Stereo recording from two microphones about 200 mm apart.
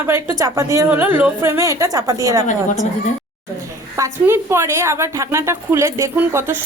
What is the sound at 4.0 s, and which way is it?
A woman's voice, 10° right (ahead or behind).